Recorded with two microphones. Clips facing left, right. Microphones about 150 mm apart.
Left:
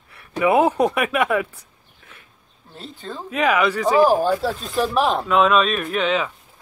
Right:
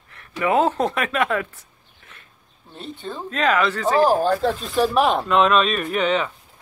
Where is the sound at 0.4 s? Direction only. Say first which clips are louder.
Left 3 dB; 10° left (ahead or behind).